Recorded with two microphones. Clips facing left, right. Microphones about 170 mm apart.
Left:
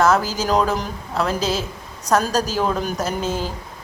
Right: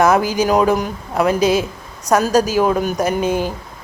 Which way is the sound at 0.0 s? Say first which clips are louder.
Right 4 dB; 15° right (ahead or behind).